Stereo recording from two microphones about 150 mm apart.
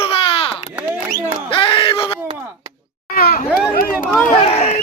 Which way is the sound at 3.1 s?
80° left.